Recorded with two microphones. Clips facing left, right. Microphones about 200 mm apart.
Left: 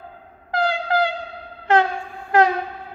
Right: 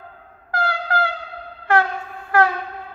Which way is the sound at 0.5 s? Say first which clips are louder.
Left 3 dB; 20° left (ahead or behind).